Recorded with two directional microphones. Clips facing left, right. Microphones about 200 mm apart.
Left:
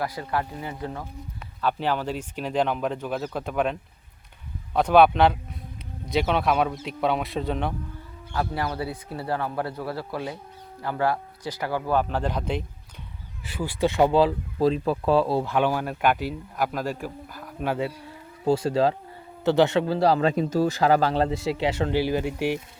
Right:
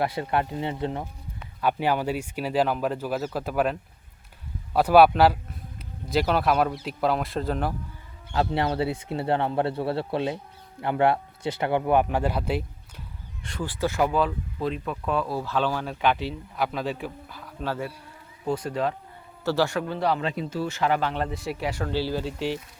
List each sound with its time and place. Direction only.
0.0 s speech: 25° right (ahead or behind)
1.6 s speech: 10° right (ahead or behind)
8.3 s speech: 25° right (ahead or behind); by 12.6 s 5° right (ahead or behind)
13.4 s speech: 5° left (ahead or behind); by 15.4 s 30° left (ahead or behind)
15.4 s speech: 15° left (ahead or behind)
18.4 s speech: 30° left (ahead or behind)